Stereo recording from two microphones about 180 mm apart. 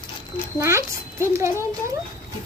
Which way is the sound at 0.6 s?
15° right (ahead or behind).